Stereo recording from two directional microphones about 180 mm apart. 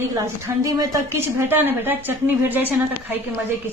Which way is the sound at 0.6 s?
20° right (ahead or behind).